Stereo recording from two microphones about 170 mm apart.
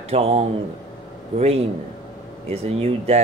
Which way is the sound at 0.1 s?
35° right (ahead or behind).